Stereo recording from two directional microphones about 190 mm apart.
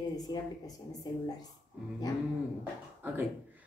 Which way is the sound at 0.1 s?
20° left (ahead or behind).